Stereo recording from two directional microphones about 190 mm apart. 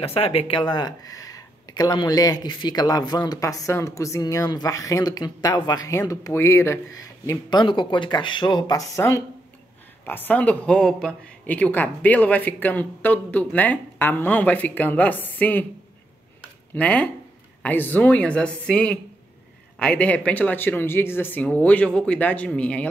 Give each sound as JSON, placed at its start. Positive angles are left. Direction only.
{"t": 0.0, "sound": "speech", "side_deg": 30}
{"t": 16.7, "sound": "speech", "side_deg": 5}